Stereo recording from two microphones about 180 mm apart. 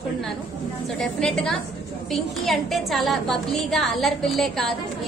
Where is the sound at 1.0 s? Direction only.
Centre (ahead or behind).